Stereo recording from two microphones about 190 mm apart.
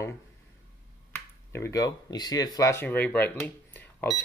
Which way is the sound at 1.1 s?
15° left (ahead or behind).